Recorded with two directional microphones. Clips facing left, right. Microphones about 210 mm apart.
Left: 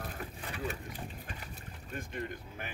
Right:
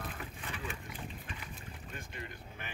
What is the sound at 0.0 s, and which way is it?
Boat, 40° left (ahead or behind).